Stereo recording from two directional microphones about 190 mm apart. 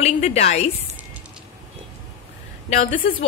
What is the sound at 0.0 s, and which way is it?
Speech, 35° left (ahead or behind).